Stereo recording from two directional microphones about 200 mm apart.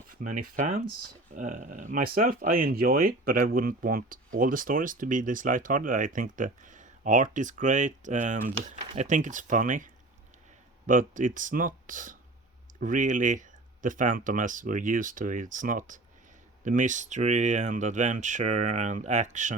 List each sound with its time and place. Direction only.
0.1 s speech: 45° right (ahead or behind)